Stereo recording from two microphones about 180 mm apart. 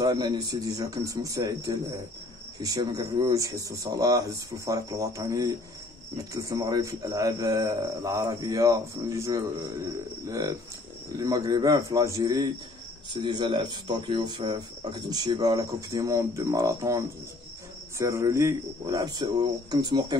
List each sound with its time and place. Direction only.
0.0 s speech: 20° right (ahead or behind)